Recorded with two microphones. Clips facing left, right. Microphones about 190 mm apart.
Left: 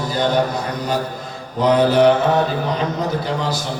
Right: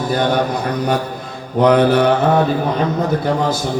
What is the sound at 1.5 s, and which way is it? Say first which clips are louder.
Speech: right 2 dB; 60° right (ahead or behind).